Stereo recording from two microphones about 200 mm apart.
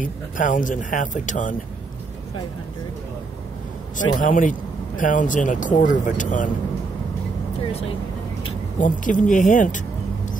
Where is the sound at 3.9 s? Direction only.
40° left (ahead or behind).